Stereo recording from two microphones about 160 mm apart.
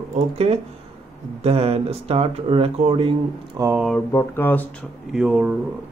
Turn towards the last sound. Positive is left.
turn(degrees=-5)  # may be behind; listen again after turning